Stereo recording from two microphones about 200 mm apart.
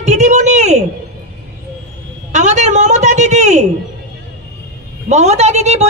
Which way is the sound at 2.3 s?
35° right (ahead or behind).